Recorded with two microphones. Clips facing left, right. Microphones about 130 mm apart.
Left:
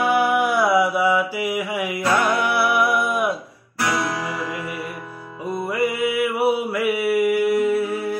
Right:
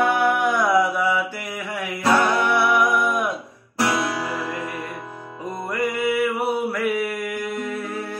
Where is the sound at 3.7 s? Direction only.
25° right (ahead or behind).